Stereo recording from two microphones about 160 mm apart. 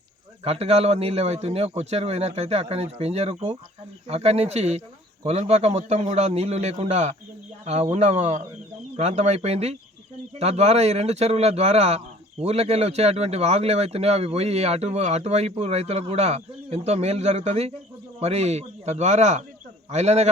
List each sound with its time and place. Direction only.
0.4 s a man's voice: 40° right (ahead or behind)